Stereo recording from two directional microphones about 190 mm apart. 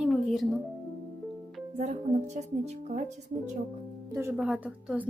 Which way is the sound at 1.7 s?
40° right (ahead or behind).